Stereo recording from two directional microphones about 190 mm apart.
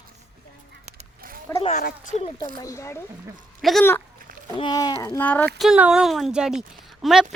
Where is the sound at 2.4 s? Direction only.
15° left (ahead or behind).